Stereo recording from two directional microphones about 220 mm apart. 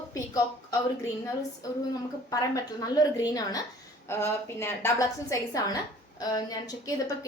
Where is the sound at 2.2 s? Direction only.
15° left (ahead or behind).